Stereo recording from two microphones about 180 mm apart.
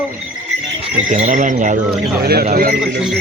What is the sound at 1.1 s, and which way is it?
Speech, 45° right (ahead or behind).